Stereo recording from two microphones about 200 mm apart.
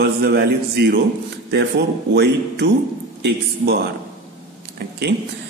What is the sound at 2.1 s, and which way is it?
Speech, 55° right (ahead or behind).